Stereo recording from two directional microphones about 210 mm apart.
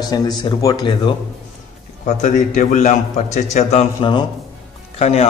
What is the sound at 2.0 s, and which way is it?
A man's voice, 35° left (ahead or behind).